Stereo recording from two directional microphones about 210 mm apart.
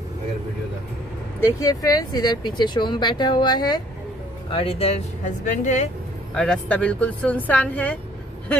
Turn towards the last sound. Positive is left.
turn(degrees=5)  # may be behind; listen again after turning